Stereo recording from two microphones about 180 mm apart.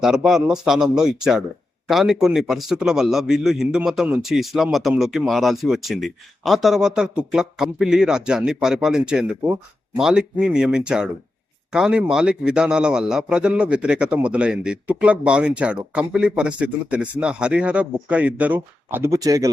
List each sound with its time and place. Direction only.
0.0 s a man's voice: 5° right (ahead or behind); by 19.5 s 20° right (ahead or behind)